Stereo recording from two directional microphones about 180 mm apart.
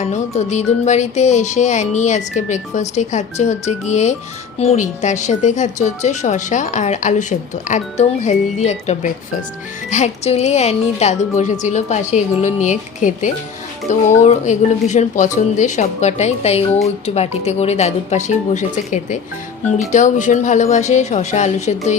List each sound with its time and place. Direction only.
0.0 s speech: 40° left (ahead or behind)